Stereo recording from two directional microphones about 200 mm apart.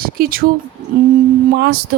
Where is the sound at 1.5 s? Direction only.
55° right (ahead or behind).